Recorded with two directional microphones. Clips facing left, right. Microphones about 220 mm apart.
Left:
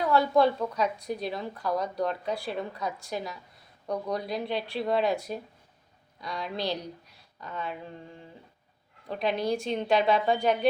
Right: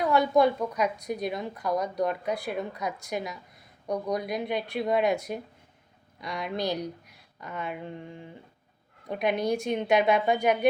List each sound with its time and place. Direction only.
0.0 s a woman's voice: 15° right (ahead or behind)
9.0 s a woman's voice: 15° right (ahead or behind)